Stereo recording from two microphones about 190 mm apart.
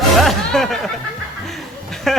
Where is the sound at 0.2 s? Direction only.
Centre (ahead or behind).